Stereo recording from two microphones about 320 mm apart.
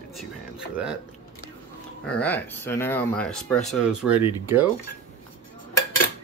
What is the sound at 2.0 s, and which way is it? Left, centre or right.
Speech, centre.